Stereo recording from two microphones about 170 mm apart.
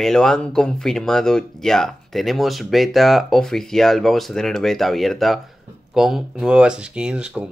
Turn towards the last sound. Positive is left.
turn(degrees=-5)  # may be behind; listen again after turning